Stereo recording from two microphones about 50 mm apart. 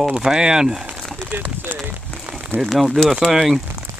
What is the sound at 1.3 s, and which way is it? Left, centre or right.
Speech, right.